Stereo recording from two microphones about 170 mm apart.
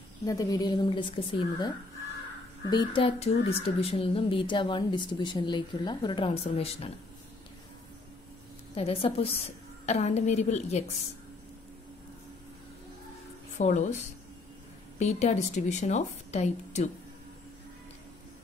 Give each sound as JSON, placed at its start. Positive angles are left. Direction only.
{"t": 0.2, "sound": "a woman's voice", "side_deg": 20}
{"t": 2.7, "sound": "speech", "side_deg": 30}
{"t": 8.7, "sound": "speech", "side_deg": 35}
{"t": 13.6, "sound": "a woman's voice", "side_deg": 45}